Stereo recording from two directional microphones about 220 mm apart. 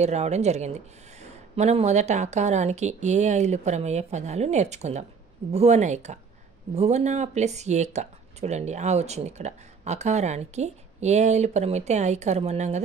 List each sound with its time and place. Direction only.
0.0 s speech: 30° right (ahead or behind)